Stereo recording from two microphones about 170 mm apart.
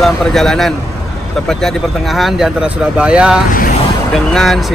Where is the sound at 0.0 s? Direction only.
Centre (ahead or behind).